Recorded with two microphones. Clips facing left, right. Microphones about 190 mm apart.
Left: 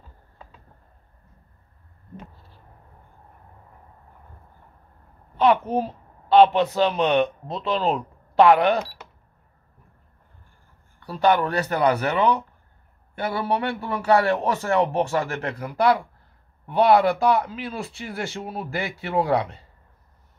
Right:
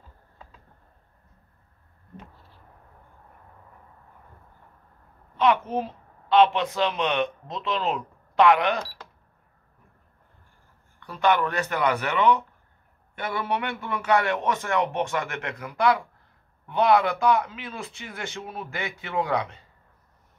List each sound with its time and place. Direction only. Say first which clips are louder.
5.4 s a child's voice: left 3 dB; 35° left (ahead or behind)
11.0 s a man's voice: left 3 dB; 35° left (ahead or behind)